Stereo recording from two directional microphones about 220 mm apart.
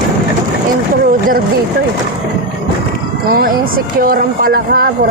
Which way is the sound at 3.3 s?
40° right (ahead or behind).